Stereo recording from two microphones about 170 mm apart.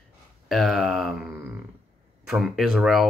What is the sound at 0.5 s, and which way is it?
Speech, centre (ahead or behind).